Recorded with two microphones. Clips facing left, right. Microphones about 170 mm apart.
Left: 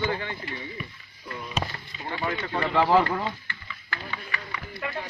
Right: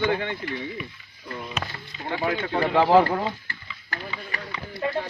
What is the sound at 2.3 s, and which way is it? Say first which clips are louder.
Speech: right 4 dB; 60° right (ahead or behind).